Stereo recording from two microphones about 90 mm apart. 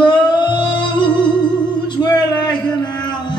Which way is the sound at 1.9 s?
50° left (ahead or behind).